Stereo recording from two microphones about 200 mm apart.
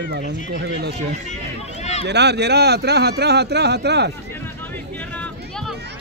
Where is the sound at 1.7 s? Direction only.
35° left (ahead or behind).